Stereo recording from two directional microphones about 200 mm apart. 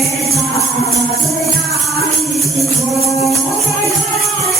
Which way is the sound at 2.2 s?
Centre (ahead or behind).